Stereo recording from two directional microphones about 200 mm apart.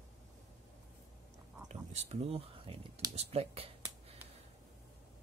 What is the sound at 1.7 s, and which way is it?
Speech, 35° right (ahead or behind).